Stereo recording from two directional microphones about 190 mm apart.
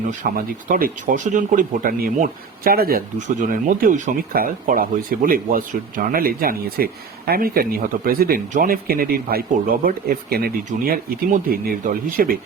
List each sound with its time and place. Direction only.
0.1 s speech: 45° right (ahead or behind)